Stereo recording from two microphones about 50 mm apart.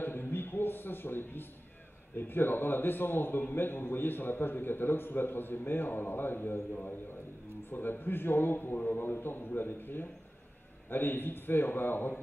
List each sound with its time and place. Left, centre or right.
0.0 s a sound: left
2.1 s a man's voice: left
6.7 s a man's voice: left